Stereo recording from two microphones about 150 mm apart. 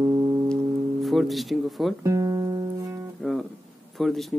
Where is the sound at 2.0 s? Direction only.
20° right (ahead or behind).